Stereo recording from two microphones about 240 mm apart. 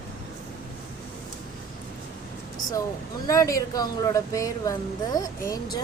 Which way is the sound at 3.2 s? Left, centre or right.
Centre.